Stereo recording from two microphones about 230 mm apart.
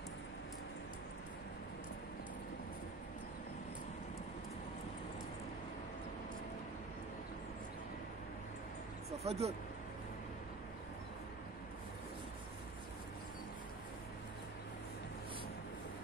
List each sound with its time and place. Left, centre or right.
9.2 s speech: right